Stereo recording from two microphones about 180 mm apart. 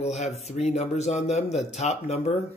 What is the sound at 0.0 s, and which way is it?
Speech, 40° left (ahead or behind).